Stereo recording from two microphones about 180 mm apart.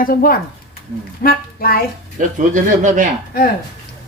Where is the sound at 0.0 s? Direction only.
50° left (ahead or behind).